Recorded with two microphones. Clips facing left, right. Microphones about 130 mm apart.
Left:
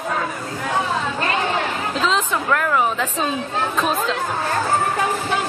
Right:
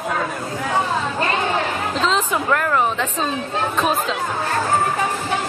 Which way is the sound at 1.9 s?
Centre (ahead or behind).